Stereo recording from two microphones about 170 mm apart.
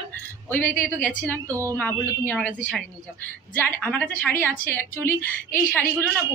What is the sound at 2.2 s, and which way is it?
Speech, 10° left (ahead or behind).